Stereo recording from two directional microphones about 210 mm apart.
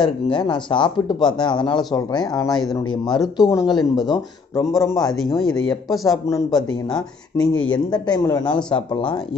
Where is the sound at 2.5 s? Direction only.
Centre (ahead or behind).